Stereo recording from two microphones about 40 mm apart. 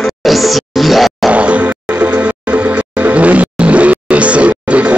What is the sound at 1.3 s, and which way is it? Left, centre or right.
Music, right.